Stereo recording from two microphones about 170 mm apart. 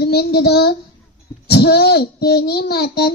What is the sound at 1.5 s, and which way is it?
A child's voice, 70° left (ahead or behind).